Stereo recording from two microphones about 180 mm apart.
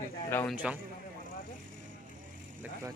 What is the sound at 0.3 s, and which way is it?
Speech, 10° left (ahead or behind).